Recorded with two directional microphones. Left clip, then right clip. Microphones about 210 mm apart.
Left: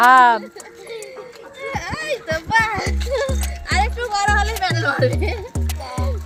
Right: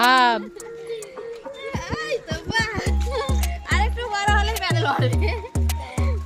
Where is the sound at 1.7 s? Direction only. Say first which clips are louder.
Left 3 dB; 15° right (ahead or behind).